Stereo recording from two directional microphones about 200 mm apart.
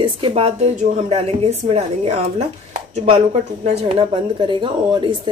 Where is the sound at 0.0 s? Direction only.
25° right (ahead or behind).